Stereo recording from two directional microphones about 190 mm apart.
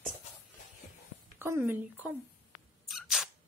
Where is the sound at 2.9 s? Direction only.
Centre (ahead or behind).